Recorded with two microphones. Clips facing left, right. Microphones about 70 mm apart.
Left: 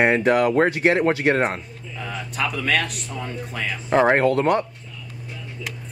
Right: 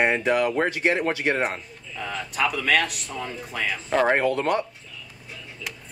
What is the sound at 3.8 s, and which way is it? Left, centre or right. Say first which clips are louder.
Speech: left 4 dB; centre.